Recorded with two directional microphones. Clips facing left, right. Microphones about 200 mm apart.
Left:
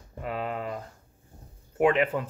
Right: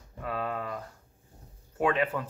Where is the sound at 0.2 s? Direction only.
20° left (ahead or behind).